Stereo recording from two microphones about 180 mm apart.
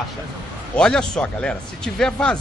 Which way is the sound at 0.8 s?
5° left (ahead or behind).